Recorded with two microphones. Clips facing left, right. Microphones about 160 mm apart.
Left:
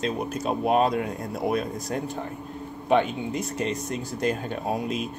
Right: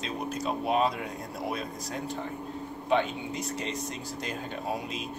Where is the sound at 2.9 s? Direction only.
55° left (ahead or behind).